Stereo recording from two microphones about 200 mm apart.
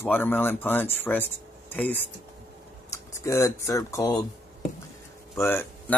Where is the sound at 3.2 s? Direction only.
15° left (ahead or behind).